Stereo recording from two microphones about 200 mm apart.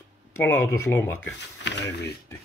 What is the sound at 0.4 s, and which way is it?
Speech, 10° left (ahead or behind).